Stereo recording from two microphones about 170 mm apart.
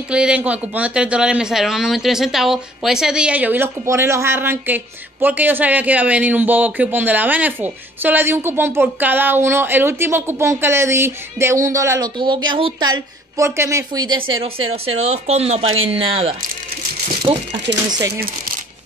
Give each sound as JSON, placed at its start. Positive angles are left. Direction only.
{"t": 0.1, "sound": "speech", "side_deg": -5}
{"t": 12.2, "sound": "speech", "side_deg": -30}
{"t": 13.4, "sound": "speech", "side_deg": -15}